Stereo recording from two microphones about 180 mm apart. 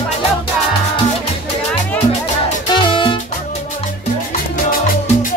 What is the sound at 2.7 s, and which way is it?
Music, 25° left (ahead or behind).